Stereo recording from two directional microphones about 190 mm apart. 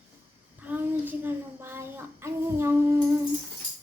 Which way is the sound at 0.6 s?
10° right (ahead or behind).